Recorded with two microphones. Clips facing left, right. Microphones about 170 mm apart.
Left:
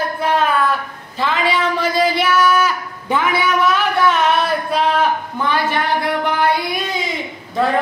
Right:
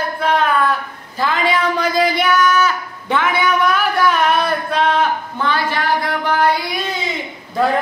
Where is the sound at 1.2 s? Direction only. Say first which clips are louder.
Right 1 dB; centre (ahead or behind).